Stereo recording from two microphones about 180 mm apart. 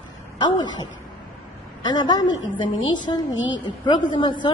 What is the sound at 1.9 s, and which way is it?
Speech, 25° left (ahead or behind).